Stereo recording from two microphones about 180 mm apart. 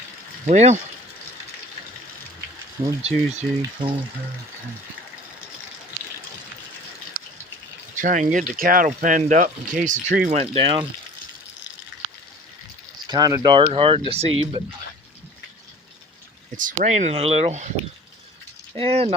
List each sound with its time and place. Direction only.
0.4 s speech: 40° right (ahead or behind)
3.0 s speech: 30° right (ahead or behind)
7.9 s speech: 45° right (ahead or behind)
13.1 s speech: 20° right (ahead or behind)
16.6 s speech: 45° right (ahead or behind)
18.8 s speech: 35° right (ahead or behind)